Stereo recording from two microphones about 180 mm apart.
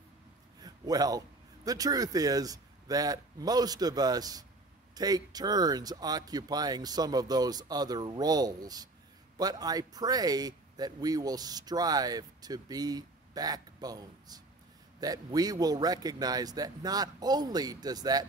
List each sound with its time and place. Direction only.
0.6 s a man's voice: 20° right (ahead or behind)